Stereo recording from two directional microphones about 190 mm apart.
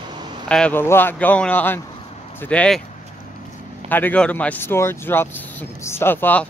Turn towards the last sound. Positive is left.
turn(degrees=10)  # may be behind; listen again after turning